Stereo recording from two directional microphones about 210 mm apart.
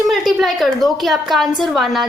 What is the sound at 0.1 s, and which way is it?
A woman's voice, centre (ahead or behind).